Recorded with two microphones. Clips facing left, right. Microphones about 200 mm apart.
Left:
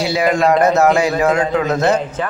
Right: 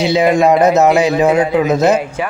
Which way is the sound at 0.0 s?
20° right (ahead or behind).